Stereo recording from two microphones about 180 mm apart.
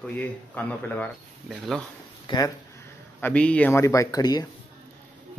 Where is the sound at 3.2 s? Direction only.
5° left (ahead or behind).